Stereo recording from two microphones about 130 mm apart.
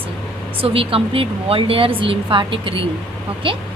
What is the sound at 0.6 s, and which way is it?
Speech, 45° right (ahead or behind).